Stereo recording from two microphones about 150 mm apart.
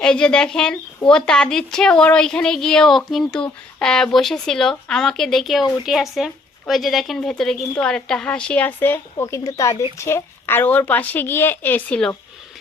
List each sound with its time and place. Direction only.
0.0 s a woman's voice: 5° left (ahead or behind)